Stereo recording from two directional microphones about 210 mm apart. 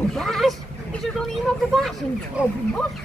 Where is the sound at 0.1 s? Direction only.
Centre (ahead or behind).